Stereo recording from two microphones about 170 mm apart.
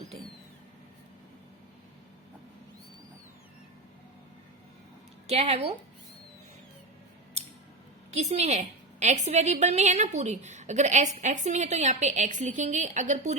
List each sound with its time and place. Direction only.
5.3 s speech: 40° right (ahead or behind)
8.1 s a woman's voice: 40° right (ahead or behind)